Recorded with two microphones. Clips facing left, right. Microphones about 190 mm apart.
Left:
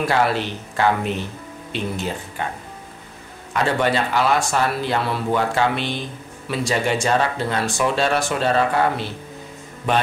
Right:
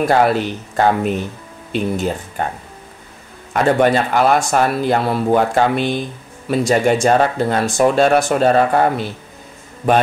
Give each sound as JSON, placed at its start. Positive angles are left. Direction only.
{"t": 0.0, "sound": "speech", "side_deg": -45}
{"t": 3.5, "sound": "speech", "side_deg": -50}